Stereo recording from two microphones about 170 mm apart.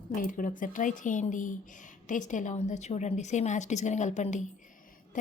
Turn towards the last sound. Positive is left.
turn(degrees=45)  # may be behind; listen again after turning